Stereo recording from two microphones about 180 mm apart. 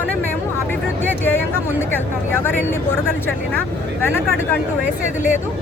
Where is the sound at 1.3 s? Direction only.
10° left (ahead or behind).